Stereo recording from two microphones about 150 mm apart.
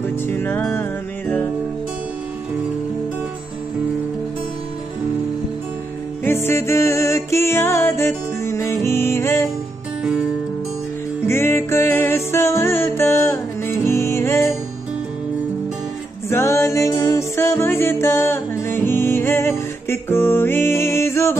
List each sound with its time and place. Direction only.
0.0 s music: 15° left (ahead or behind)
6.2 s music: 15° left (ahead or behind)
11.2 s music: 15° left (ahead or behind)
16.3 s music: 20° left (ahead or behind)